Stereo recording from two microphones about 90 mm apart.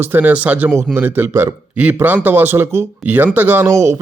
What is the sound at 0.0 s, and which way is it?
Speech, 20° right (ahead or behind).